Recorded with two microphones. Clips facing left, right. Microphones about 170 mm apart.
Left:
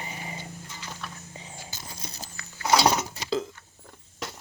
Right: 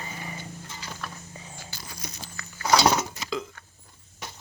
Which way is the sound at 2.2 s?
30° left (ahead or behind).